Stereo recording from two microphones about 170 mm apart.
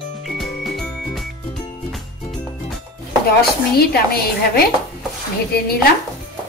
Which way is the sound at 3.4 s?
65° left (ahead or behind).